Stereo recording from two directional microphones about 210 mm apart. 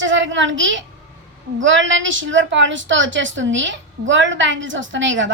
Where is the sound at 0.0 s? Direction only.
60° right (ahead or behind).